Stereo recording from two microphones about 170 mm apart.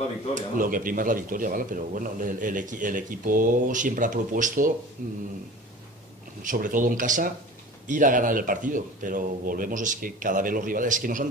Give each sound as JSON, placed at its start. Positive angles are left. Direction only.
{"t": 0.3, "sound": "speech", "side_deg": -50}
{"t": 6.4, "sound": "speech", "side_deg": -50}